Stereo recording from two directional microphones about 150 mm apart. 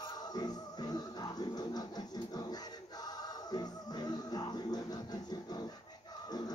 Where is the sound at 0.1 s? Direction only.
25° left (ahead or behind).